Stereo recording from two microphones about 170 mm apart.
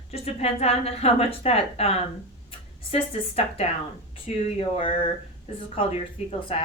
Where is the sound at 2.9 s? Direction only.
35° left (ahead or behind).